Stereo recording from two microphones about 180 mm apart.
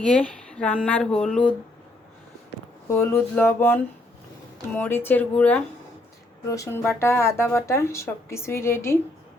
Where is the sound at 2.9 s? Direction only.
10° left (ahead or behind).